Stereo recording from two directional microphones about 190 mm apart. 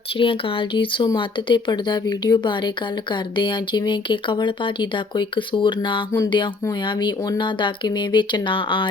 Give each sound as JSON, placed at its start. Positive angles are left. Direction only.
{"t": 0.2, "sound": "speech", "side_deg": 25}